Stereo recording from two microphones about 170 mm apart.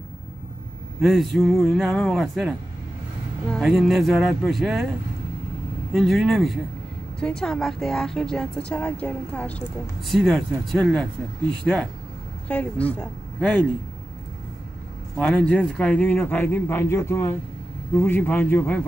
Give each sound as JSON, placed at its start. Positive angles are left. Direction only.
{"t": 1.0, "sound": "speech", "side_deg": 0}
{"t": 5.9, "sound": "speech", "side_deg": 0}
{"t": 15.1, "sound": "a man's voice", "side_deg": 5}